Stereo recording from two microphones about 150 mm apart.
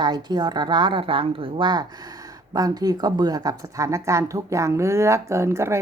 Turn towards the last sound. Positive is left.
turn(degrees=-20)  # may be behind; listen again after turning